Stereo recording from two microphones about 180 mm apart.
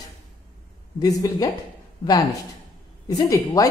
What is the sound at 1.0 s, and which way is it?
Speech, 20° left (ahead or behind).